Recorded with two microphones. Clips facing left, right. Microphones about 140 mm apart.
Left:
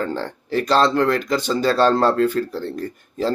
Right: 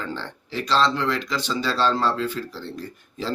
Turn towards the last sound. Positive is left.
turn(degrees=50)  # may be behind; listen again after turning